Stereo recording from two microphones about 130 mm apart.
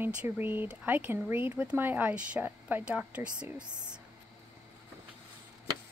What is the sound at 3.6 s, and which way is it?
Speech, 35° right (ahead or behind).